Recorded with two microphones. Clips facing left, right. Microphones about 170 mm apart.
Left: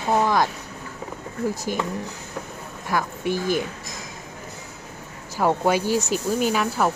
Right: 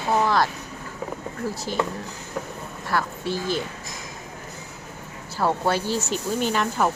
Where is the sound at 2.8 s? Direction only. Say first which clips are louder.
Left 2 dB; 15° left (ahead or behind).